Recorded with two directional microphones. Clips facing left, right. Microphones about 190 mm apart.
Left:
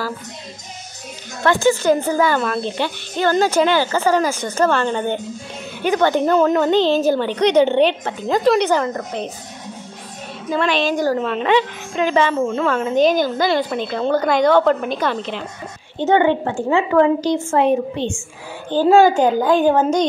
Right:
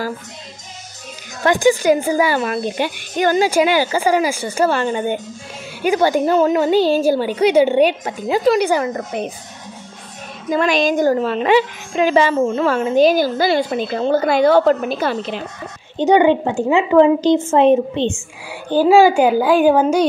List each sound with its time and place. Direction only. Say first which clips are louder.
1.4 s a woman's voice: right 2 dB; 15° right (ahead or behind)
10.5 s a woman's voice: right 3 dB; 10° right (ahead or behind)
18.7 s a woman's voice: right 1 dB; 10° right (ahead or behind)